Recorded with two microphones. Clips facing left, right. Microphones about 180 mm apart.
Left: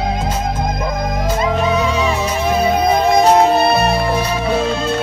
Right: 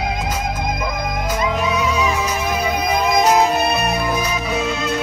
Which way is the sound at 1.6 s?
30° left (ahead or behind).